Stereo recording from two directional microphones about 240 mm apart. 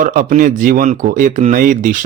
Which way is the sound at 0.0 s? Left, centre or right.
Right.